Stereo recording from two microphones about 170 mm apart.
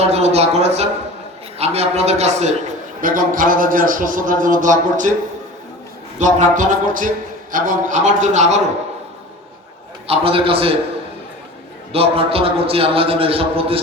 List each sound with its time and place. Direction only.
0.0 s a man's voice: 40° right (ahead or behind)
6.1 s a man's voice: 45° right (ahead or behind)
10.1 s a man's voice: 35° right (ahead or behind)
11.9 s a man's voice: 35° right (ahead or behind)